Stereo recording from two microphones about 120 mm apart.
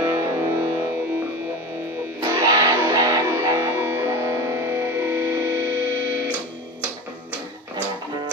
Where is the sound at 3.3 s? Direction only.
25° right (ahead or behind).